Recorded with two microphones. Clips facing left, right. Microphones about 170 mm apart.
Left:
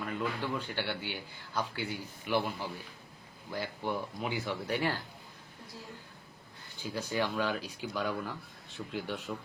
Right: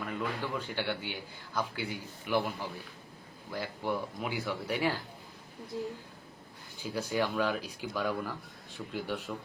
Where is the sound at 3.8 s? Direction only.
5° right (ahead or behind).